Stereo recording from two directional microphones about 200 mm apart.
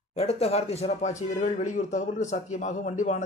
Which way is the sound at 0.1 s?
30° left (ahead or behind).